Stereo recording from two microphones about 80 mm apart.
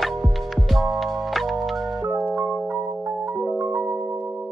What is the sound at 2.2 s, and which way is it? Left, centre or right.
Music, centre.